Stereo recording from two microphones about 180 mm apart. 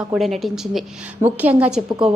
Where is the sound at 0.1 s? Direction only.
Centre (ahead or behind).